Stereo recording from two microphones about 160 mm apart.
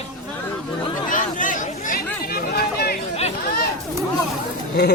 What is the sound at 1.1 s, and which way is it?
Speech, 55° left (ahead or behind).